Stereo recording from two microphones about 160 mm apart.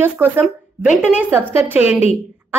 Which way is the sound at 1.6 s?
10° right (ahead or behind).